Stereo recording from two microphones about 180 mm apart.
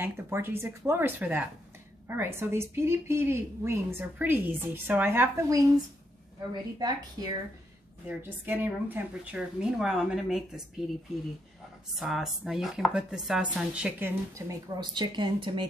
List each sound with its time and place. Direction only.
0.0 s a woman's voice: 10° right (ahead or behind)
6.8 s speech: 20° right (ahead or behind)
8.1 s speech: 10° right (ahead or behind)
14.8 s speech: 25° right (ahead or behind)